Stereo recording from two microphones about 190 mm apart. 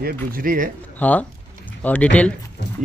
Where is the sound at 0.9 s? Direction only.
10° left (ahead or behind).